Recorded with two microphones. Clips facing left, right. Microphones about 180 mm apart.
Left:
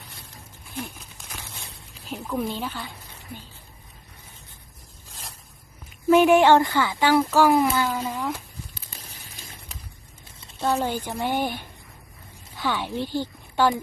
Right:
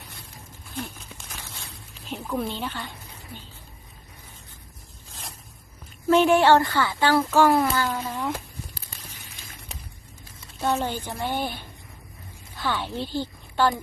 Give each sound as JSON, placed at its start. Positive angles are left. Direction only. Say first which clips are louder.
{"t": 2.2, "sound": "a woman's voice", "louder": "left 1 dB", "side_deg": 0}
{"t": 6.1, "sound": "speech", "louder": "left 2 dB", "side_deg": 10}
{"t": 7.2, "sound": "a woman's voice", "louder": "even", "side_deg": 0}
{"t": 10.6, "sound": "speech", "louder": "left 1 dB", "side_deg": 10}